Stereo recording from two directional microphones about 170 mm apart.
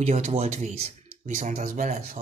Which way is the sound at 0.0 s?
40° right (ahead or behind).